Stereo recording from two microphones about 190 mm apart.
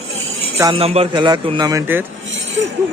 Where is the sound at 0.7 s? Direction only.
30° right (ahead or behind); by 2.0 s 15° right (ahead or behind).